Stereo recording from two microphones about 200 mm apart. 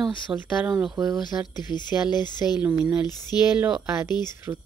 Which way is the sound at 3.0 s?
20° left (ahead or behind).